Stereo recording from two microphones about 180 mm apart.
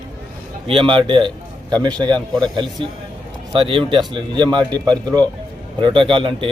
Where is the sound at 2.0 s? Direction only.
5° left (ahead or behind).